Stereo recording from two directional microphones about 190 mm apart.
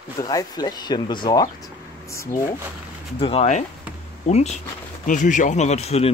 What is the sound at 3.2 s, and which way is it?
Speech, 30° left (ahead or behind).